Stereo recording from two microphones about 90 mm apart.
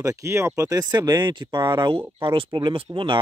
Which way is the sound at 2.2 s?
80° right.